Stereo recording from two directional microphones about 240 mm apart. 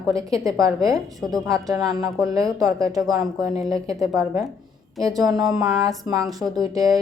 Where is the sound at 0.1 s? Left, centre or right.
Centre.